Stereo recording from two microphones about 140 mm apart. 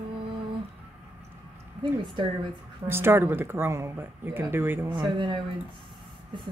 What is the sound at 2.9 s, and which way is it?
Speech, 15° right (ahead or behind).